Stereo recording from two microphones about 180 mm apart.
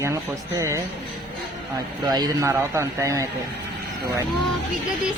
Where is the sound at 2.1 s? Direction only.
20° right (ahead or behind).